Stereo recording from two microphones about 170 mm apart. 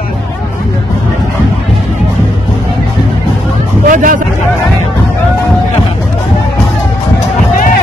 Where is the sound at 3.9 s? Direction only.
50° right (ahead or behind).